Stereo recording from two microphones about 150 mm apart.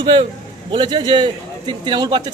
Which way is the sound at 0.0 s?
30° right (ahead or behind).